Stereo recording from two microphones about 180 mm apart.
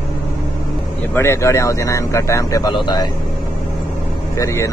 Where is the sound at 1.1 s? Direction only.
15° left (ahead or behind).